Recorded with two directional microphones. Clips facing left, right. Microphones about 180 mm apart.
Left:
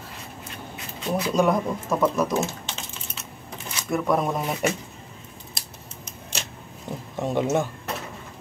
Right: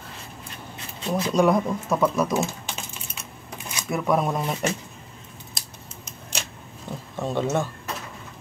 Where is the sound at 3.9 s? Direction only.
5° right (ahead or behind).